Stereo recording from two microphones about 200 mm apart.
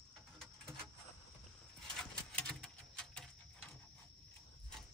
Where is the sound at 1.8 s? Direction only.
5° left (ahead or behind).